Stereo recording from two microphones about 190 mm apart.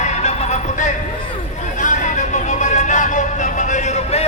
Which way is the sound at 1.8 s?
40° left (ahead or behind).